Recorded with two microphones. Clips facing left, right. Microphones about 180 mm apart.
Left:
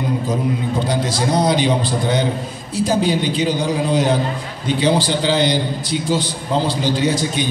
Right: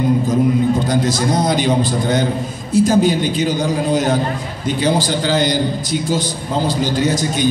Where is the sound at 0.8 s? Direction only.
45° right (ahead or behind).